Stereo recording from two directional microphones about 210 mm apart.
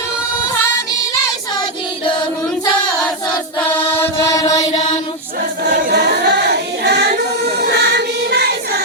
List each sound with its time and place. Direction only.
3.6 s mantra: 10° left (ahead or behind)
5.6 s choir: 50° right (ahead or behind)